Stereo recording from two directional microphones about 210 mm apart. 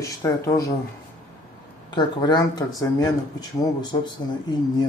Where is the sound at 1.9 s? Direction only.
20° left (ahead or behind).